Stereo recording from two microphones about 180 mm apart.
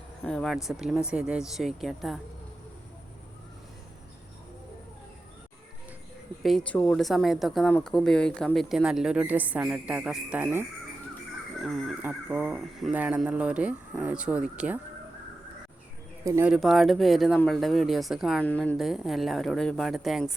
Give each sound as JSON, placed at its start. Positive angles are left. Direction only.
{"t": 0.3, "sound": "speech", "side_deg": 0}
{"t": 6.4, "sound": "speech", "side_deg": 5}
{"t": 11.6, "sound": "speech", "side_deg": 0}
{"t": 16.2, "sound": "speech", "side_deg": -15}
{"t": 16.5, "sound": "speech", "side_deg": 0}